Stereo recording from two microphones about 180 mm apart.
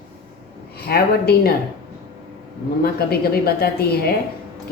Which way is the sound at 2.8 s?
60° left (ahead or behind).